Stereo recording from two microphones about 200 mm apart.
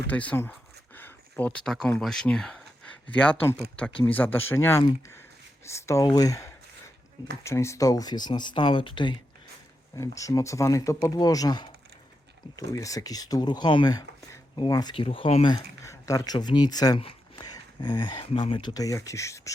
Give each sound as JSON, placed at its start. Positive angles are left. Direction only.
{"t": 0.1, "sound": "speech", "side_deg": 5}
{"t": 4.0, "sound": "speech", "side_deg": 10}
{"t": 15.5, "sound": "speech", "side_deg": 15}